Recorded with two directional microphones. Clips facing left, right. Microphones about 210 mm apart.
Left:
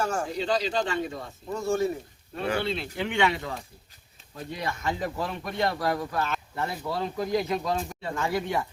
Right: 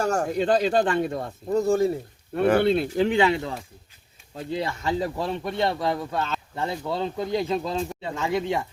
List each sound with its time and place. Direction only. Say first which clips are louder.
0.0 s speech: right 5 dB; 45° right (ahead or behind)
1.5 s speech: right 5 dB; 35° right (ahead or behind)
2.3 s speech: right 9 dB; 55° right (ahead or behind); by 3.5 s 30° right (ahead or behind)
4.5 s speech: right 5 dB; 30° right (ahead or behind)